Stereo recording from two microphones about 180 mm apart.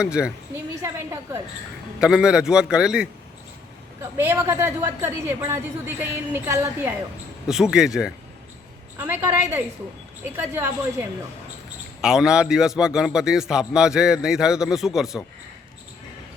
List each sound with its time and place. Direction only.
0.0 s a man's voice: 5° right (ahead or behind)
0.8 s a woman's voice: 15° right (ahead or behind)
2.0 s a man's voice: 5° right (ahead or behind)
4.2 s a woman's voice: 15° right (ahead or behind)
7.4 s a man's voice: 5° right (ahead or behind)
12.0 s a man's voice: 5° right (ahead or behind)